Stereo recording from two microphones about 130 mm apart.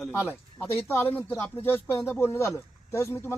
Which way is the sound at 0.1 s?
15° left (ahead or behind).